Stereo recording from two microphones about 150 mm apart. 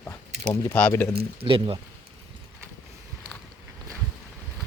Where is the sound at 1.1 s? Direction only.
40° right (ahead or behind).